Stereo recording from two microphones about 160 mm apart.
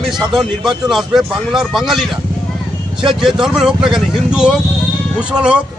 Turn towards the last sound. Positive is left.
turn(degrees=-5)  # may be behind; listen again after turning